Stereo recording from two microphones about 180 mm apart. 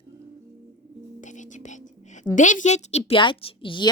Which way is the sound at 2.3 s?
45° left (ahead or behind).